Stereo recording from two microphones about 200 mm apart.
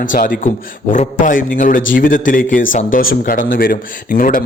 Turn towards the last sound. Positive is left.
turn(degrees=45)  # may be behind; listen again after turning